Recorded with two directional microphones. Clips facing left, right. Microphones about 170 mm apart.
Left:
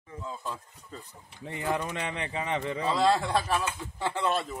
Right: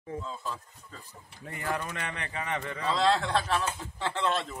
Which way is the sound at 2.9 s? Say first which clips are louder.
Left 1 dB; 10° left (ahead or behind).